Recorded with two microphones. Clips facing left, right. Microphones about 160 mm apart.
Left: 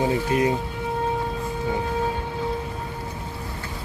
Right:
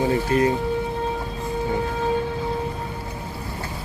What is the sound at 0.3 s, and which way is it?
Speech, 15° left (ahead or behind).